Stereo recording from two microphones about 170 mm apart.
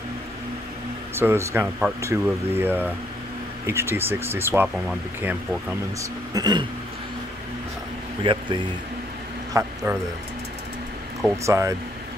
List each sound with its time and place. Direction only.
1.1 s speech: 15° right (ahead or behind)
6.3 s speech: 25° right (ahead or behind)
8.2 s speech: 30° right (ahead or behind)
9.5 s a man's voice: 15° right (ahead or behind)
11.4 s speech: 15° right (ahead or behind)